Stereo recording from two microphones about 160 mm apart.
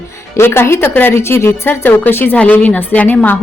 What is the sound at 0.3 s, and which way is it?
Speech, 15° left (ahead or behind).